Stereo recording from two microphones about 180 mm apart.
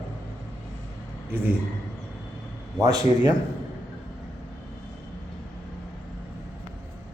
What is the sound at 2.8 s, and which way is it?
Speech, 20° right (ahead or behind).